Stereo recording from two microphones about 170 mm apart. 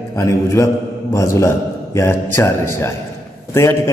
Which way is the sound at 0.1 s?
20° left (ahead or behind).